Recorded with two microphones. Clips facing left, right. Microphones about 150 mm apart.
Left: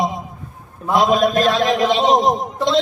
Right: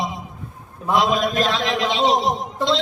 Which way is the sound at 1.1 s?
50° left (ahead or behind).